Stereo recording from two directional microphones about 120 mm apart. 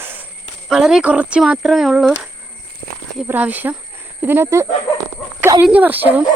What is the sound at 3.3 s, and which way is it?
Speech, 15° right (ahead or behind).